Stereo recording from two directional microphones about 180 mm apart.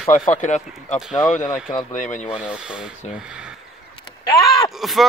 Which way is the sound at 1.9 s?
45° left (ahead or behind).